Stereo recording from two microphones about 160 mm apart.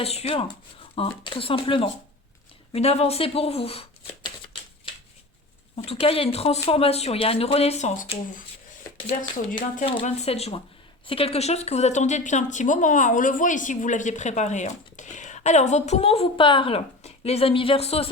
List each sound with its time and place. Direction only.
0.0 s speech: 40° left (ahead or behind)
5.7 s speech: 40° left (ahead or behind)
9.8 s a woman's voice: 40° left (ahead or behind)